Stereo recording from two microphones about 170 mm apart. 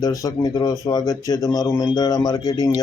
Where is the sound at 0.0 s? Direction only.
20° left (ahead or behind).